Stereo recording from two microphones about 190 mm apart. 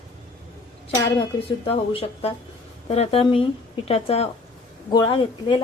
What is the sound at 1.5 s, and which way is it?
A woman's voice, 30° left (ahead or behind).